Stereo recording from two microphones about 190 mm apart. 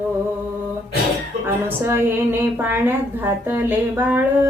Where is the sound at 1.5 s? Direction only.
10° right (ahead or behind).